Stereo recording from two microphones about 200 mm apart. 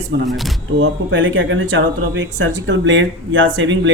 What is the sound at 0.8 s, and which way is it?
Speech, 65° right (ahead or behind).